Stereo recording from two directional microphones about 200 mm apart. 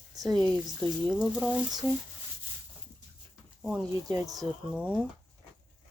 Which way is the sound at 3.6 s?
Centre (ahead or behind).